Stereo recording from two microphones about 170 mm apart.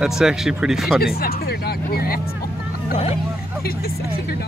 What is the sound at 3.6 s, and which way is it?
Speech, 65° left (ahead or behind).